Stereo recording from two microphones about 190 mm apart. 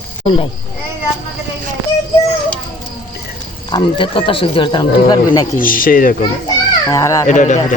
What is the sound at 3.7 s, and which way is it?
Speech, 25° left (ahead or behind).